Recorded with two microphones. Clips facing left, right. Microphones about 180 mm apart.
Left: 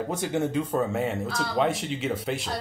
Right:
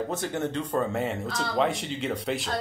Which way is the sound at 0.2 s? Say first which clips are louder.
Left 3 dB; 10° left (ahead or behind).